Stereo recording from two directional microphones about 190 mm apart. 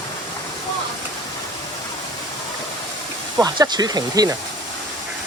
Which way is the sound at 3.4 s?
20° right (ahead or behind).